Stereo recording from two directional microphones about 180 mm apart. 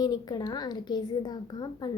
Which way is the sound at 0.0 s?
25° left (ahead or behind).